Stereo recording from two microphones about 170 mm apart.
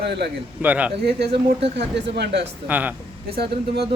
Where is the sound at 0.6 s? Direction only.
10° right (ahead or behind).